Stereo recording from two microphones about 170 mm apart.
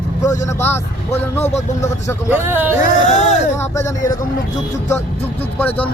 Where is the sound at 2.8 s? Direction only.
40° left (ahead or behind).